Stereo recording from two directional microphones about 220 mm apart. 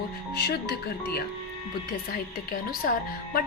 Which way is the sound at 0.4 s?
50° left (ahead or behind).